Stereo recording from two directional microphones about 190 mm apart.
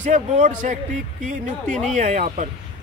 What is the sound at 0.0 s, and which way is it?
Speech, 40° right (ahead or behind).